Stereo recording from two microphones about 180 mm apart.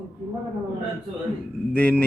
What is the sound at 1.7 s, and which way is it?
Speech, 5° left (ahead or behind).